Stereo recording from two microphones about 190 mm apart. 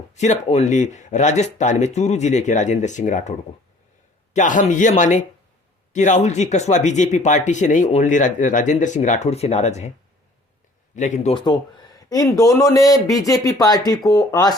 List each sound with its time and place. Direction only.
0.1 s speech: 35° left (ahead or behind)
4.4 s speech: 40° left (ahead or behind)
10.9 s speech: 40° left (ahead or behind); by 14.5 s 20° left (ahead or behind)